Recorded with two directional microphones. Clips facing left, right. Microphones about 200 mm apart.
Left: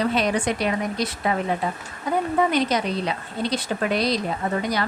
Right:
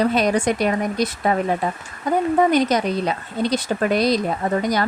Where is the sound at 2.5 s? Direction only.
45° right (ahead or behind).